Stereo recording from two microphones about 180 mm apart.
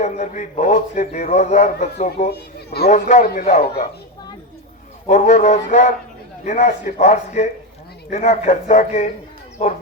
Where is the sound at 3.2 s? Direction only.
55° left (ahead or behind).